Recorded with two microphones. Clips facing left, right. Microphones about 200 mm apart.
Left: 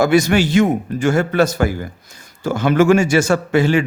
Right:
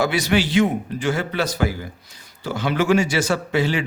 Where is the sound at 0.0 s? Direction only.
45° left (ahead or behind).